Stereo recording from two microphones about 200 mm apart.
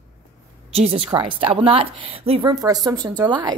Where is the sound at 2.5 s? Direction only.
20° right (ahead or behind).